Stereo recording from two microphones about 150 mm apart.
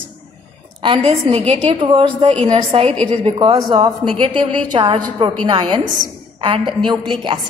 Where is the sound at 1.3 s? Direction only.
35° right (ahead or behind).